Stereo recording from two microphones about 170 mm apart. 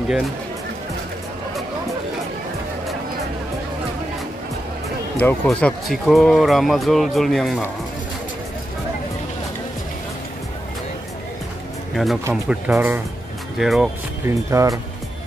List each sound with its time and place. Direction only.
5.2 s speech: 5° left (ahead or behind)
11.9 s speech: centre (ahead or behind)
13.6 s speech: centre (ahead or behind)
14.2 s speech: 15° right (ahead or behind)